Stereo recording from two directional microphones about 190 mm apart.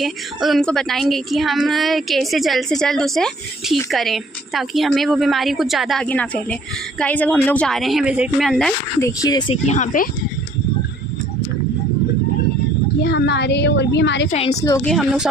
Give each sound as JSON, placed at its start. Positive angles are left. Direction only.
{"t": 0.0, "sound": "a woman's voice", "side_deg": 0}
{"t": 9.0, "sound": "speech", "side_deg": 15}
{"t": 9.6, "sound": "speech", "side_deg": 40}
{"t": 13.0, "sound": "a woman's voice", "side_deg": 65}
{"t": 14.3, "sound": "speech", "side_deg": 35}
{"t": 14.5, "sound": "a woman's voice", "side_deg": 15}
{"t": 14.8, "sound": "a woman's voice", "side_deg": 0}